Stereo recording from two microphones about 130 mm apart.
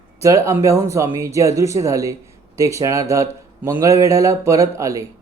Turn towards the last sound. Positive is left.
turn(degrees=-25)  # may be behind; listen again after turning